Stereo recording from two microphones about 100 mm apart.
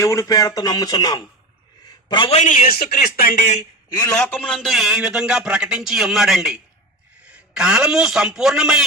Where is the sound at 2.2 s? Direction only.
90° left.